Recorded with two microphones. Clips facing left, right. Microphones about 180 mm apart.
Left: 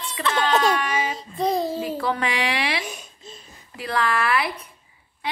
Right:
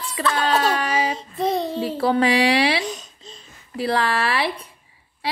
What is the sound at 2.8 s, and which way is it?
Babbling, 10° left (ahead or behind).